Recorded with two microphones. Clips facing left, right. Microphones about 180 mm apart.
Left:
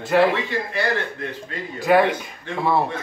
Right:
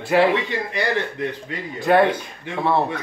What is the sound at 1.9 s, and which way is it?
Speech, 5° left (ahead or behind).